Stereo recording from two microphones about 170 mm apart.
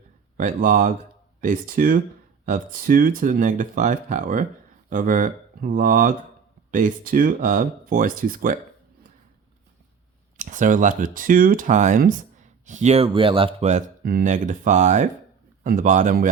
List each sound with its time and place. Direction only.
0.3 s speech: 50° right (ahead or behind)
10.3 s speech: 50° right (ahead or behind)
14.0 s speech: 60° right (ahead or behind)